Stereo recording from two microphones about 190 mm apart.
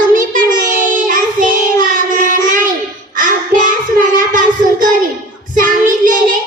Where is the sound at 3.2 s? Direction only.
45° right (ahead or behind).